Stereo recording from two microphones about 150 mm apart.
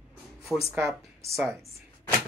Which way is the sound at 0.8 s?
20° right (ahead or behind).